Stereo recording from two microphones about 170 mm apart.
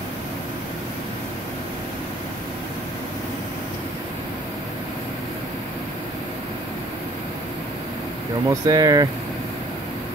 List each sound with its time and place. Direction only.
8.5 s speech: 20° right (ahead or behind)